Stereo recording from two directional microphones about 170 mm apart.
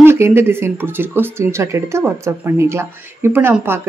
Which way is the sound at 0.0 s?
15° right (ahead or behind).